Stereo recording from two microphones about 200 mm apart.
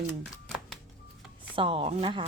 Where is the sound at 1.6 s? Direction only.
25° right (ahead or behind).